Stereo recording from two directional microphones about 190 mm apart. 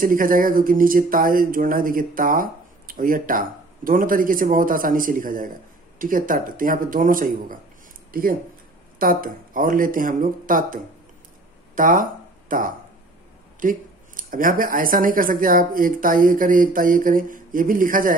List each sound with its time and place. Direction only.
0.0 s speech: 45° right (ahead or behind)